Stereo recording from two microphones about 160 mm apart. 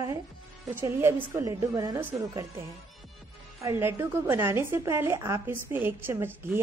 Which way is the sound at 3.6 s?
15° right (ahead or behind).